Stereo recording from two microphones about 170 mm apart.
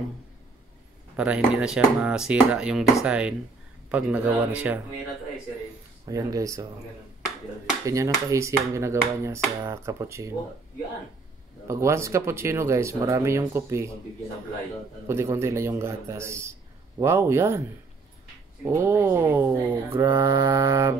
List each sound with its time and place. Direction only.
1.1 s speech: 5° right (ahead or behind)
6.0 s speech: 20° right (ahead or behind)
7.8 s speech: 20° right (ahead or behind)
11.6 s speech: 15° right (ahead or behind)
15.0 s speech: 15° right (ahead or behind)
18.7 s speech: 15° right (ahead or behind)